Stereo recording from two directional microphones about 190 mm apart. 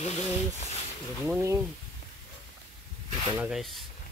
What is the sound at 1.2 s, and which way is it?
Speech, 15° right (ahead or behind).